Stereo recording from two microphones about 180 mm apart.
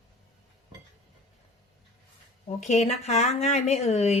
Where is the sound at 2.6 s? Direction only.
40° left (ahead or behind).